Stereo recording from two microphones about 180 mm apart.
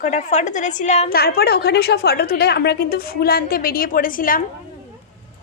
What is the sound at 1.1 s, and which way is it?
A woman's voice, 60° left (ahead or behind).